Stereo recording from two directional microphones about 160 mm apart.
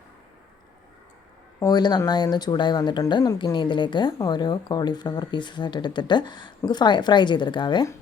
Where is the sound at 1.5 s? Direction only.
25° left (ahead or behind).